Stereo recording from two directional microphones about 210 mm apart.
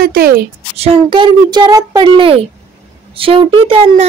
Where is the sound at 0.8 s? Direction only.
25° right (ahead or behind).